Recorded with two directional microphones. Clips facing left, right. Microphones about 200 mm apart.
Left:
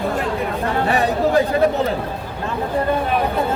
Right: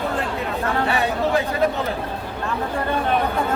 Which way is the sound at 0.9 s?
40° left (ahead or behind).